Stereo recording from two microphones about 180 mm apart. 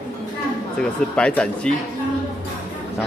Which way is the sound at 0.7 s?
5° left (ahead or behind).